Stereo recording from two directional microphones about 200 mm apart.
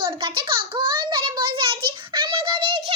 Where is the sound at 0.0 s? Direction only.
25° right (ahead or behind).